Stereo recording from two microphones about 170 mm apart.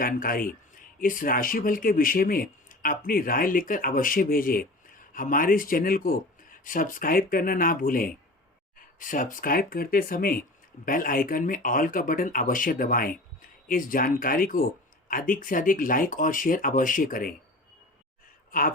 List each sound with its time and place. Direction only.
0.0 s speech: 55° left (ahead or behind)
18.5 s speech: 55° left (ahead or behind)